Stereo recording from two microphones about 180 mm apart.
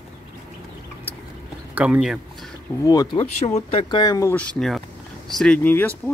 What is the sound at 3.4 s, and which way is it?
Speech, 35° left (ahead or behind).